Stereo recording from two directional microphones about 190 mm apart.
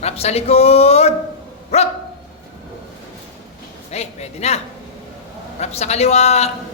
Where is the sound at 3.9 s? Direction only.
35° left (ahead or behind).